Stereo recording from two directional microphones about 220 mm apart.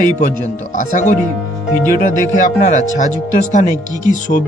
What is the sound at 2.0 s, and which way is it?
Speech, 35° left (ahead or behind).